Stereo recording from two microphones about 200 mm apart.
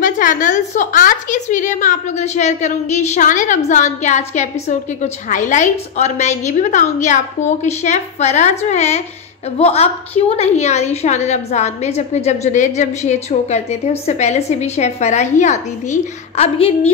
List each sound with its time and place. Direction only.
0.0 s a woman's voice: 40° left (ahead or behind)